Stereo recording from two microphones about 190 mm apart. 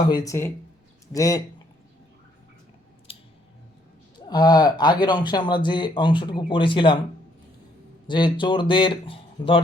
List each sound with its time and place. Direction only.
0.0 s speech: 20° left (ahead or behind)
3.1 s scissors: 30° left (ahead or behind)
4.3 s speech: 20° left (ahead or behind)
8.0 s speech: 25° left (ahead or behind)